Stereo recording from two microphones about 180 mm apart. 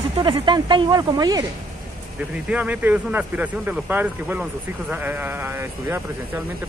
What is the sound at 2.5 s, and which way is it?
Speech, 10° right (ahead or behind).